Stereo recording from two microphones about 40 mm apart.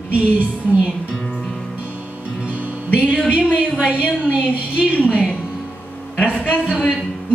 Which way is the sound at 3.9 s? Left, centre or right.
Right.